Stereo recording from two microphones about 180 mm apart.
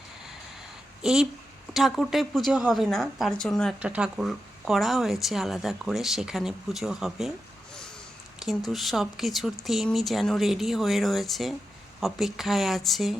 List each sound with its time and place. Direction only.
1.0 s speech: centre (ahead or behind)
8.4 s speech: centre (ahead or behind)